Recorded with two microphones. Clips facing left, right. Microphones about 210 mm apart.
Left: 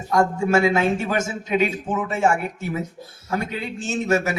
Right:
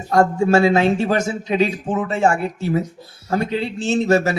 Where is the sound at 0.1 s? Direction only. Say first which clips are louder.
Right 4 dB; 35° right (ahead or behind).